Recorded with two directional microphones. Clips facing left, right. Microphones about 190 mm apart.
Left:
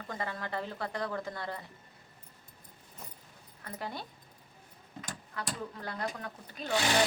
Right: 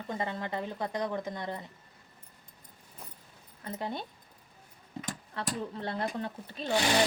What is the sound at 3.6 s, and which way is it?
Speech, 20° right (ahead or behind).